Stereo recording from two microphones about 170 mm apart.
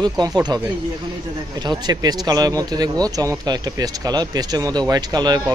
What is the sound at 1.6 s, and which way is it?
Speech, 25° right (ahead or behind).